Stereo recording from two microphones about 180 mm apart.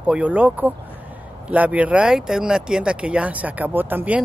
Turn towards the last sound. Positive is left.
turn(degrees=-10)  # may be behind; listen again after turning